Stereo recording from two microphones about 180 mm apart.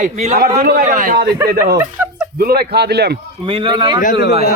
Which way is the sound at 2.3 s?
60° right (ahead or behind).